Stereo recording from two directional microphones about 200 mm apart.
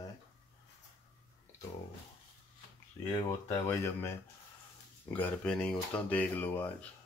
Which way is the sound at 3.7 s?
15° left (ahead or behind).